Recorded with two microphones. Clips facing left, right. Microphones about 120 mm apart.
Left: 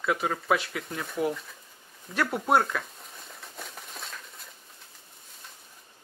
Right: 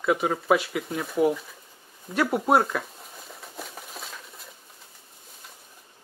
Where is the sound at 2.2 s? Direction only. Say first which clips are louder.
Right 3 dB; 5° right (ahead or behind).